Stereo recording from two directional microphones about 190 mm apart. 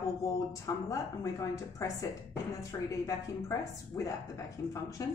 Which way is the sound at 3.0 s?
15° left (ahead or behind).